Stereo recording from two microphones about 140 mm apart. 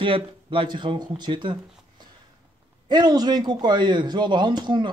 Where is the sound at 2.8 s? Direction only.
30° right (ahead or behind).